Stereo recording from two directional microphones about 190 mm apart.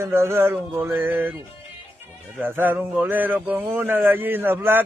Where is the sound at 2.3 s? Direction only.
10° right (ahead or behind).